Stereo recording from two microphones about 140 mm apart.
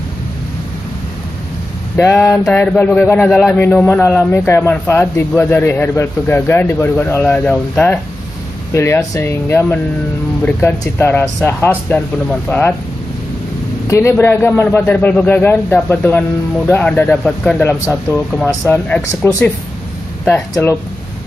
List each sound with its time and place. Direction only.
2.0 s a man's voice: 20° left (ahead or behind)
3.3 s speech: centre (ahead or behind)
3.5 s a man's voice: 15° left (ahead or behind)
8.7 s a man's voice: 20° left (ahead or behind)
13.8 s a man's voice: 20° left (ahead or behind)
20.2 s speech: 5° left (ahead or behind)